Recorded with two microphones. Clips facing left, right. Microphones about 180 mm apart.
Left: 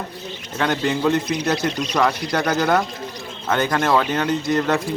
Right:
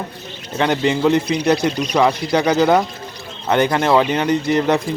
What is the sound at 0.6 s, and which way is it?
Speech, 15° right (ahead or behind).